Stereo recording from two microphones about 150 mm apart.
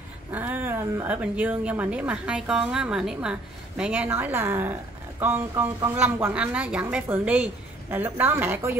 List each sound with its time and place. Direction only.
0.3 s speech: 10° right (ahead or behind)